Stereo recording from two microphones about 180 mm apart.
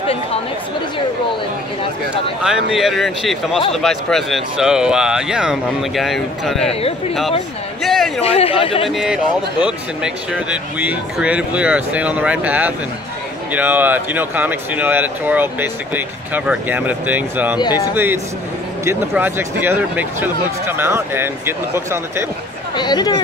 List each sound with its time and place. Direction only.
0.0 s chatter: 30° left (ahead or behind)
2.4 s speech: 5° right (ahead or behind)
7.8 s a sound: centre (ahead or behind)
8.2 s speech: 35° left (ahead or behind)
8.8 s speech: centre (ahead or behind)
17.6 s speech: 25° left (ahead or behind)
17.9 s speech: 10° right (ahead or behind)
22.8 s speech: 25° left (ahead or behind)